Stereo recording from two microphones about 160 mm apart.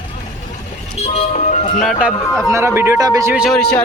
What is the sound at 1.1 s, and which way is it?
Music, 45° left (ahead or behind).